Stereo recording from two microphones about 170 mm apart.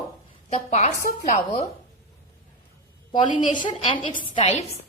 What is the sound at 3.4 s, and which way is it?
Speech, 50° left (ahead or behind).